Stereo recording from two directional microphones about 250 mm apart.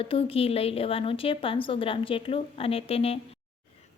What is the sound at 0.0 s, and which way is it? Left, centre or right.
A woman's voice, left.